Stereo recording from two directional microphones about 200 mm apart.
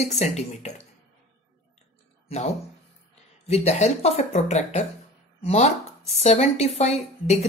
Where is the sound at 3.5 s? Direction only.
35° left (ahead or behind).